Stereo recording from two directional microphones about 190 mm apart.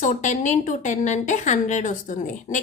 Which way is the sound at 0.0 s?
40° left (ahead or behind).